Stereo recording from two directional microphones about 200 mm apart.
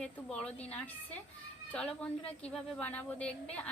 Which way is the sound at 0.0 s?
5° left (ahead or behind).